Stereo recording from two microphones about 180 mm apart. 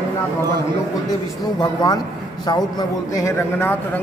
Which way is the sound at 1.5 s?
20° left (ahead or behind).